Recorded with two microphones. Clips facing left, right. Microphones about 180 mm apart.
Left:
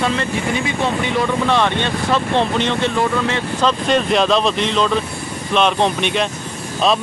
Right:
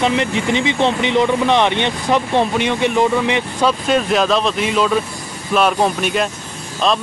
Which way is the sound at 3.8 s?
5° right (ahead or behind).